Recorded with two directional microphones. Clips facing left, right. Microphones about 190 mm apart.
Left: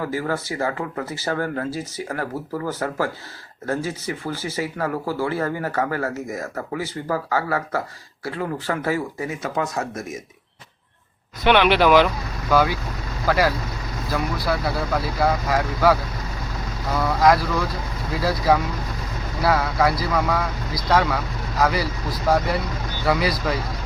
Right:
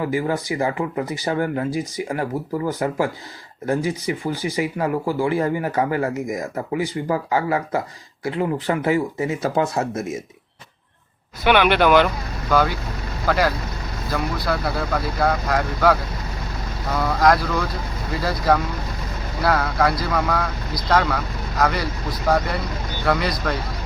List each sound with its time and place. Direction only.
0.0 s speech: 15° right (ahead or behind)
11.4 s speech: 5° right (ahead or behind)